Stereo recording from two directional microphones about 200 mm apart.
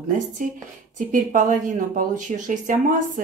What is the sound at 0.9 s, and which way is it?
Speech, 40° right (ahead or behind).